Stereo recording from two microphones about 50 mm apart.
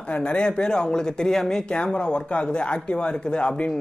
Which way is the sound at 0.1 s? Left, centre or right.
Left.